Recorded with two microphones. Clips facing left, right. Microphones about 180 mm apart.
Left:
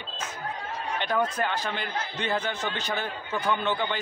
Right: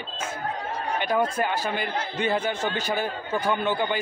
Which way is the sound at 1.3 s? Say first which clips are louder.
Right 3 dB; 10° right (ahead or behind).